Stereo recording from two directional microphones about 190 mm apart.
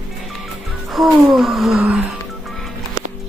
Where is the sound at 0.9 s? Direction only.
Centre (ahead or behind).